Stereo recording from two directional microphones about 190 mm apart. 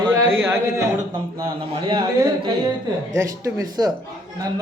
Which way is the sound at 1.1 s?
25° right (ahead or behind).